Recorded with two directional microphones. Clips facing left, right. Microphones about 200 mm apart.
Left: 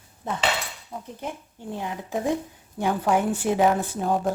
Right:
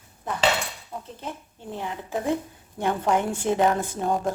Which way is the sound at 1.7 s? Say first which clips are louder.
Left 1 dB; 15° left (ahead or behind).